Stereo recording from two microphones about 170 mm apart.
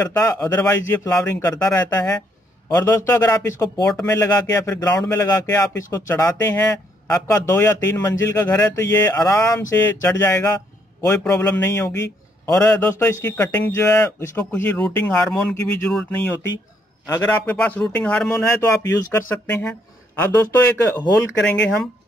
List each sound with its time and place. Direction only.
0.0 s a man's voice: 15° left (ahead or behind)
3.8 s a man's voice: 10° left (ahead or behind)
17.0 s a man's voice: 15° left (ahead or behind)
18.6 s a man's voice: 15° left (ahead or behind)